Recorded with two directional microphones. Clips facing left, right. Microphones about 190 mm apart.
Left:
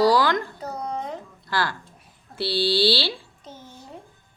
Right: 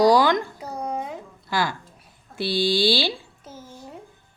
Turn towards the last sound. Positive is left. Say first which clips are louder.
# right 1 dB
turn(degrees=-5)  # may be behind; listen again after turning